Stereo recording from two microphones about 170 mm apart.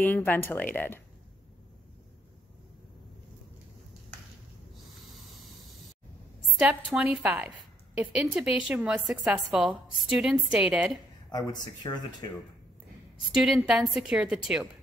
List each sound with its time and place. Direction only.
0.0 s speech: 10° left (ahead or behind)
5.0 s spray: centre (ahead or behind)
6.6 s a woman's voice: 5° right (ahead or behind)
11.3 s speech: 25° left (ahead or behind)
13.3 s a woman's voice: 5° right (ahead or behind)